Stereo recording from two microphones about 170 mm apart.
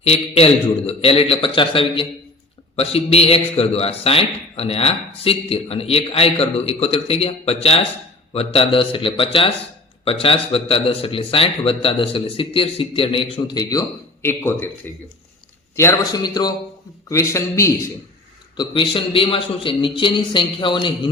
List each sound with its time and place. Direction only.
0.0 s speech: 35° left (ahead or behind); by 14.7 s 15° left (ahead or behind)
15.7 s a man's voice: 15° left (ahead or behind)
18.5 s a man's voice: 25° left (ahead or behind)